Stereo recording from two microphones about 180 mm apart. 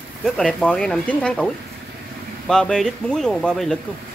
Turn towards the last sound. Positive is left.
turn(degrees=5)  # may be behind; listen again after turning